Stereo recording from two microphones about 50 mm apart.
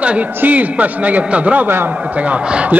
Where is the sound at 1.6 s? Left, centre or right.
Right.